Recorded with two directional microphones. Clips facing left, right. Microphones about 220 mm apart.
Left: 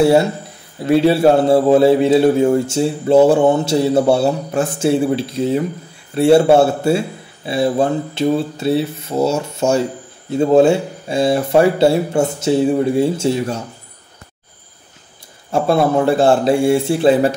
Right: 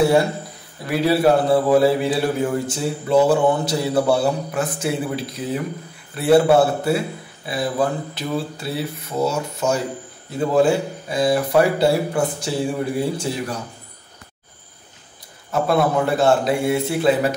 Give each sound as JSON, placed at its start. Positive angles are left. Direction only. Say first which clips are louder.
{"t": 0.8, "sound": "speech", "louder": "left 5 dB", "side_deg": 25}
{"t": 15.5, "sound": "speech", "louder": "left 4 dB", "side_deg": 30}